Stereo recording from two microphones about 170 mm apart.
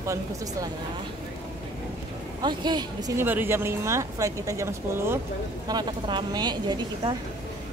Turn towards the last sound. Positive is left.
turn(degrees=-25)  # may be behind; listen again after turning